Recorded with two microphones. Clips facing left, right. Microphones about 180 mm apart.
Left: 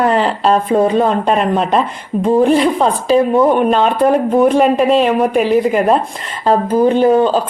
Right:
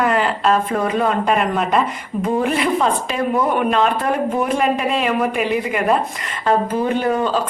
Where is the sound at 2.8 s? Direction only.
30° left (ahead or behind).